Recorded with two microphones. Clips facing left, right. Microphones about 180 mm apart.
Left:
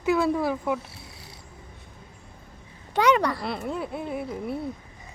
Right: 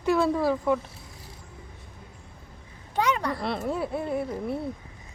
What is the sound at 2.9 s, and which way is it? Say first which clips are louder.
Speech: left 5 dB; 75° left (ahead or behind).